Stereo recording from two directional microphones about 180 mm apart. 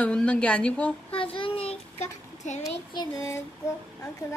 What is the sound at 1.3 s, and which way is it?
Child singing, 30° left (ahead or behind).